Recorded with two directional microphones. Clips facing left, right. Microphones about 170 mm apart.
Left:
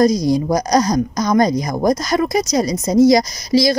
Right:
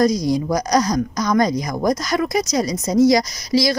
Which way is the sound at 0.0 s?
35° left (ahead or behind).